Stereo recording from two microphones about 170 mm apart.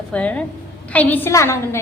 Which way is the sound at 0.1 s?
10° left (ahead or behind).